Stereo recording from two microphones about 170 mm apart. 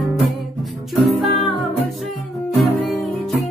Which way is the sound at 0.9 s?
Centre (ahead or behind).